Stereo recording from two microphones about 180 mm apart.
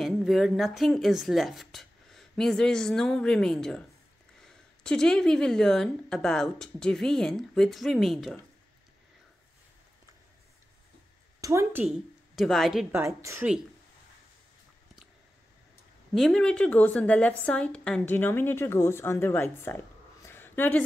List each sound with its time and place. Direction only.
0.0 s speech: centre (ahead or behind)
11.4 s a woman's voice: 15° right (ahead or behind)
12.4 s speech: centre (ahead or behind)
12.9 s a woman's voice: 15° right (ahead or behind)
16.2 s a woman's voice: 5° left (ahead or behind)